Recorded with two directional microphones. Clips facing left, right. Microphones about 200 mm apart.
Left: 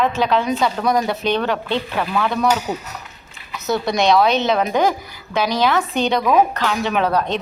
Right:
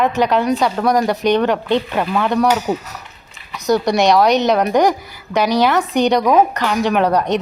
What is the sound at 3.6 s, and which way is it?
A woman's voice, 15° right (ahead or behind).